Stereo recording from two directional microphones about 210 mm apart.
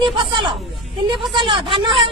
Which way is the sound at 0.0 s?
20° right (ahead or behind).